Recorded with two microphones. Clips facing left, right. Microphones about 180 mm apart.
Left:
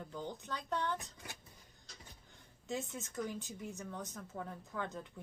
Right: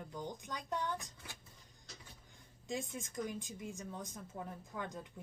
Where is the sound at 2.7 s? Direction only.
15° right (ahead or behind).